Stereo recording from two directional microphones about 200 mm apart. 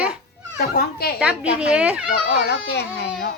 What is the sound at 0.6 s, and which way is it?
Speech, 50° left (ahead or behind).